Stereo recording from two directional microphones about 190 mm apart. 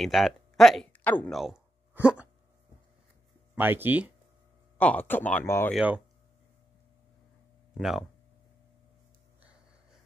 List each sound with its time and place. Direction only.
0.0 s speech: centre (ahead or behind)
1.4 s a sound: 5° right (ahead or behind)
3.5 s speech: 10° right (ahead or behind)
4.7 s speech: 10° left (ahead or behind)
5.8 s speech: 5° right (ahead or behind)
7.7 s speech: centre (ahead or behind)